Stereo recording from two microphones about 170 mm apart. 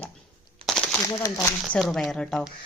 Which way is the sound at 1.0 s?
20° left (ahead or behind).